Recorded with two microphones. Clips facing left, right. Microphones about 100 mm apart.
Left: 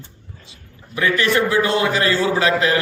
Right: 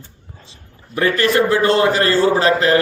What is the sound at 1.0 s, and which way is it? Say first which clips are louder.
A man's voice: right 3 dB; 40° right (ahead or behind).